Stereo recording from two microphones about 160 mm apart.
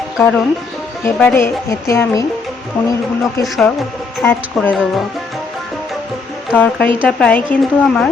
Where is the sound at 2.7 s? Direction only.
5° left (ahead or behind).